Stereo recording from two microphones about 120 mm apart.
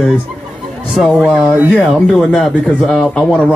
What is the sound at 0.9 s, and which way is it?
Speech, 5° right (ahead or behind).